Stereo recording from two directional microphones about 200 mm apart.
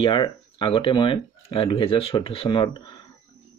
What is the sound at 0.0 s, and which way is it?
Speech, 25° left (ahead or behind).